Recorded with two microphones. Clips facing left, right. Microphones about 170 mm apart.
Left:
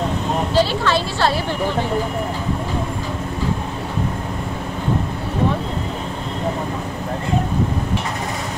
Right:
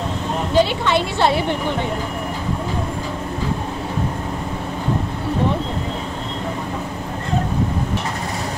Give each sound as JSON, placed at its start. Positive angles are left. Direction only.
{"t": 0.6, "sound": "a woman's voice", "side_deg": -20}